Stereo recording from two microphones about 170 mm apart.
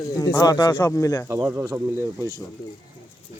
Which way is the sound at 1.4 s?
10° right (ahead or behind).